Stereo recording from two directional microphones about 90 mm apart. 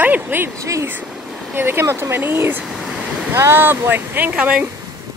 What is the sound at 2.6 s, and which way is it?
Waves, centre (ahead or behind).